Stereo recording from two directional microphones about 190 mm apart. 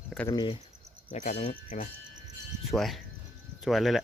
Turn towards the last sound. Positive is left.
turn(degrees=0)  # may be behind; listen again after turning